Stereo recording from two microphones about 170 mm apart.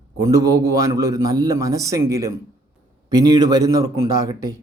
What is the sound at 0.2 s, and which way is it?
Speech, 20° right (ahead or behind).